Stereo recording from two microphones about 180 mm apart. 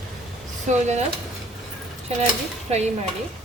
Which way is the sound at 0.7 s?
40° right (ahead or behind).